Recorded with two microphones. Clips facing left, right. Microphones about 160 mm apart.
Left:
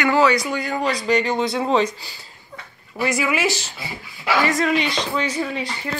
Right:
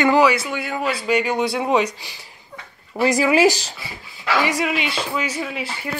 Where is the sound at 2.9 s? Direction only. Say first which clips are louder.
Right 5 dB; 35° right (ahead or behind).